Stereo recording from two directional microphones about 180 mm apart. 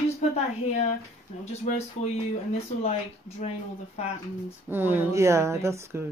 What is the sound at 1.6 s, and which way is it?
Speech, 40° left (ahead or behind).